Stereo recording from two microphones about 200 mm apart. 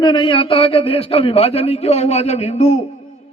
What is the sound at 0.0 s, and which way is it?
A man's voice, 25° left (ahead or behind).